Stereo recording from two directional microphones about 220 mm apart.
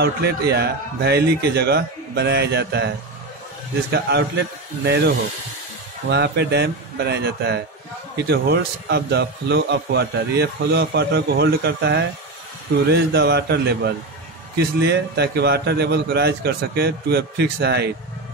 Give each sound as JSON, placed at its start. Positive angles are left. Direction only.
{"t": 0.0, "sound": "a man's voice", "side_deg": -50}
{"t": 4.8, "sound": "a man's voice", "side_deg": -50}